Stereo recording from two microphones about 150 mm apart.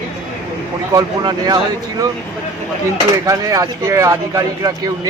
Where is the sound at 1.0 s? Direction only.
25° right (ahead or behind).